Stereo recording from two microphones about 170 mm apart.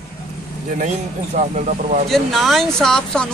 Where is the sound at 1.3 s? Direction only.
45° right (ahead or behind).